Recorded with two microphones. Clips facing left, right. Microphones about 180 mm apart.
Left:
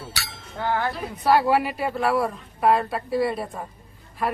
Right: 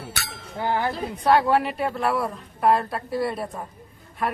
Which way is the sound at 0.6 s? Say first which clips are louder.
Even; 15° right (ahead or behind).